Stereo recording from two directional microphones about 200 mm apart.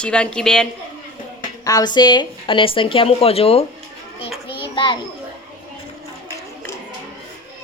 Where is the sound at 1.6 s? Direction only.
20° left (ahead or behind).